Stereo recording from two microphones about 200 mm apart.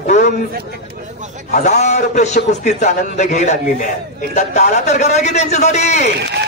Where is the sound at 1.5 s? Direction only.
40° left (ahead or behind).